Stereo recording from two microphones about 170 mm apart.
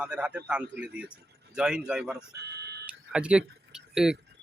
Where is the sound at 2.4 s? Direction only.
75° right (ahead or behind).